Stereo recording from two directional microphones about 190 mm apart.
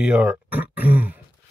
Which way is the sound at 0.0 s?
5° right (ahead or behind).